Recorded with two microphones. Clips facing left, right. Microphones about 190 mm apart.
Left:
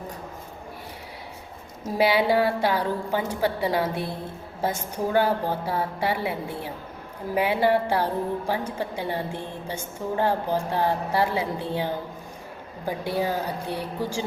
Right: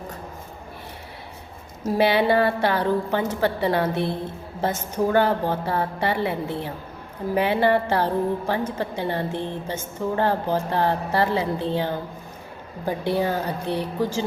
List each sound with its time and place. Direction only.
2.0 s a woman's voice: 10° left (ahead or behind)
13.1 s a woman's voice: 10° left (ahead or behind)